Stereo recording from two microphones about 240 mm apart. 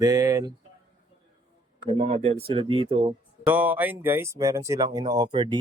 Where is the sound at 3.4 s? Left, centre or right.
Centre.